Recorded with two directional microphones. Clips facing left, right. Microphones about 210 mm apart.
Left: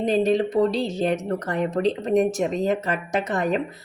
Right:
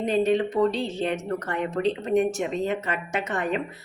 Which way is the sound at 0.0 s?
35° left (ahead or behind).